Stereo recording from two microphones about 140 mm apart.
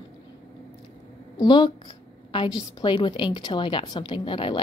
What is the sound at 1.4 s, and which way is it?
A woman's voice, 35° left (ahead or behind).